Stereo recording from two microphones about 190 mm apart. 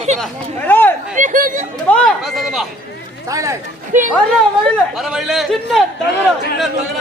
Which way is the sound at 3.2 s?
15° right (ahead or behind).